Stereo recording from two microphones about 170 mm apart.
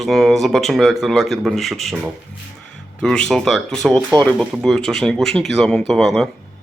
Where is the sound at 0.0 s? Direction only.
Centre (ahead or behind).